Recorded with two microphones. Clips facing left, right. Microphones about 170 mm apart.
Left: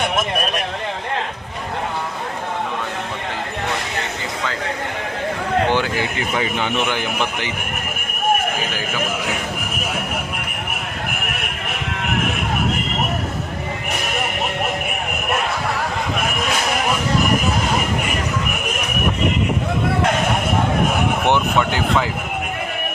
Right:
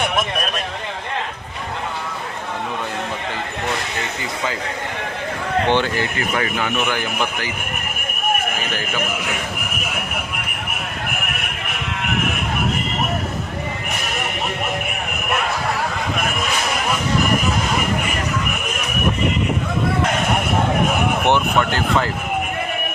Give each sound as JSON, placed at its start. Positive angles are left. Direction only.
{"t": 5.7, "sound": "a man's voice", "side_deg": 10}